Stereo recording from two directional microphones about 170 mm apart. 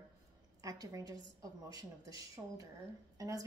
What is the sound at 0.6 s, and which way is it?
A woman's voice, 20° right (ahead or behind).